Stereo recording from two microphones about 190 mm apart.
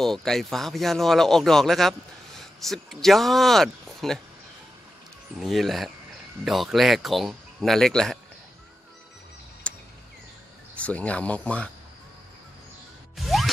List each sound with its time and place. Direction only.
0.0 s speech: centre (ahead or behind)
5.4 s speech: centre (ahead or behind)
9.6 s a sound: 5° left (ahead or behind)
10.8 s speech: 5° left (ahead or behind)
13.1 s music: centre (ahead or behind)